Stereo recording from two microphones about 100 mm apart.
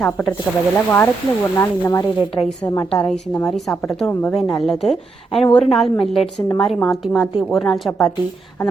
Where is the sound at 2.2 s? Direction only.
60° left (ahead or behind).